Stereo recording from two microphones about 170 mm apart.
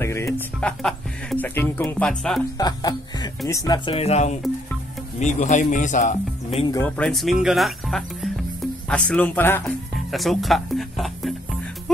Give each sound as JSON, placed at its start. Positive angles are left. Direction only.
{"t": 0.0, "sound": "speech", "side_deg": 15}
{"t": 2.5, "sound": "speech", "side_deg": 20}
{"t": 7.0, "sound": "speech", "side_deg": 0}
{"t": 10.1, "sound": "speech", "side_deg": 0}